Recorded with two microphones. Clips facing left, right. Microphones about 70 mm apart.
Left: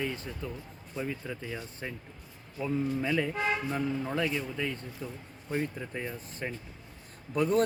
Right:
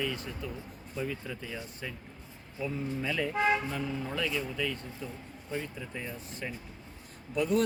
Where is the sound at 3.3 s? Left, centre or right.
Centre.